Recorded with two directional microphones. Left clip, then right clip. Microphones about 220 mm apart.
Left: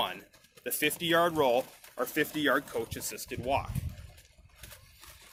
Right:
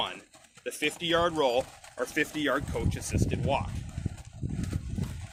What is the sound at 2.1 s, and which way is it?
Speech, 25° left (ahead or behind).